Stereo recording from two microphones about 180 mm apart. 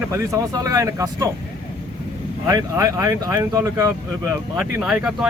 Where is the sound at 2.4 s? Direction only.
15° right (ahead or behind).